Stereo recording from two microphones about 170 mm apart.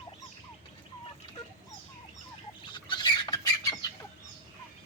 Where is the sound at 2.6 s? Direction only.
30° left (ahead or behind).